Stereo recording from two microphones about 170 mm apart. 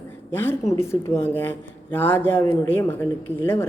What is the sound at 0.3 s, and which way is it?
A woman's voice, 15° left (ahead or behind).